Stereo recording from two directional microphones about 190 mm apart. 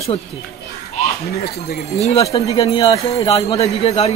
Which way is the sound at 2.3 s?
30° left (ahead or behind).